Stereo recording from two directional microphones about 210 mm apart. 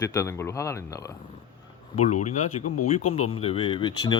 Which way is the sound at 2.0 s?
35° left (ahead or behind).